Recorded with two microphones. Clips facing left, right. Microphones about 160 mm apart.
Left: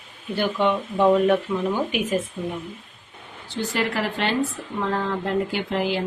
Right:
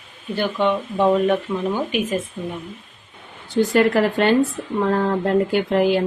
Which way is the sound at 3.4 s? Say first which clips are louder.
Right 9 dB; 50° right (ahead or behind).